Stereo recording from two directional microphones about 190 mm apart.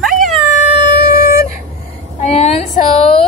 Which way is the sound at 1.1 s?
50° left (ahead or behind).